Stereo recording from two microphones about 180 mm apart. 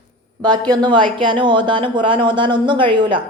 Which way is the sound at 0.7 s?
25° right (ahead or behind).